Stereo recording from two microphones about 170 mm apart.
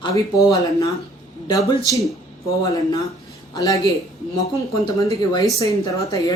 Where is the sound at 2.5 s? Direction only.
20° left (ahead or behind).